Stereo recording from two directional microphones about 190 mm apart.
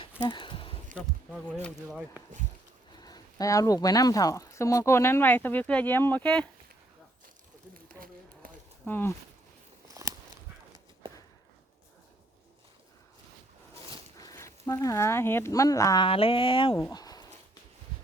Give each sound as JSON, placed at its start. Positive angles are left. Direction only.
{"t": 0.3, "sound": "a sound", "side_deg": 25}
{"t": 1.9, "sound": "speech", "side_deg": -5}
{"t": 3.0, "sound": "speech", "side_deg": 20}
{"t": 7.7, "sound": "run", "side_deg": -50}
{"t": 8.9, "sound": "speech", "side_deg": 10}
{"t": 9.9, "sound": "a sound", "side_deg": -20}
{"t": 14.2, "sound": "speech", "side_deg": 15}
{"t": 16.0, "sound": "speech", "side_deg": 30}
{"t": 16.7, "sound": "a sound", "side_deg": 15}